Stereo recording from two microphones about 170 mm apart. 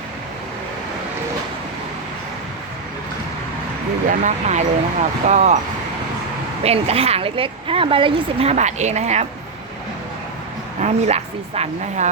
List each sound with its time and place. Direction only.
4.1 s speech: 45° right (ahead or behind)
6.6 s speech: 35° right (ahead or behind)
10.8 s speech: 40° right (ahead or behind)